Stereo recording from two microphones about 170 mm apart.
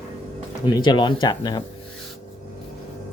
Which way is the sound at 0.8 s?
25° left (ahead or behind).